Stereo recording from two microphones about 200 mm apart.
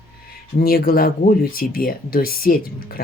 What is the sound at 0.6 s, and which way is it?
Speech, 50° left (ahead or behind).